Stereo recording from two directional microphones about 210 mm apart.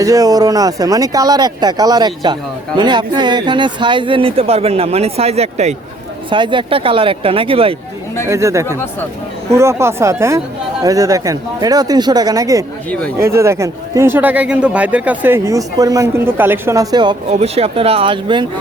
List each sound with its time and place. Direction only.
0.0 s speech: 15° right (ahead or behind)
8.3 s speech: 15° right (ahead or behind)
12.9 s speech: 5° left (ahead or behind)
13.1 s speech: 15° right (ahead or behind)